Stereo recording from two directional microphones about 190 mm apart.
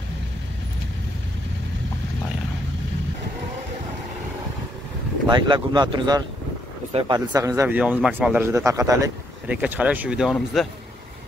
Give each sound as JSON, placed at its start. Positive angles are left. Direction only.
{"t": 5.2, "sound": "speech", "side_deg": -25}
{"t": 7.2, "sound": "speech", "side_deg": -15}